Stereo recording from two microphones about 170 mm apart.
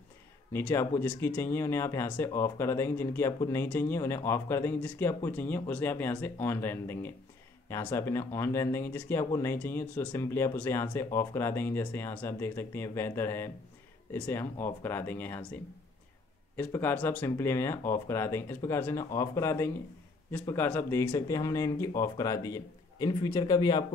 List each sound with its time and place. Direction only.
0.5 s speech: 15° left (ahead or behind)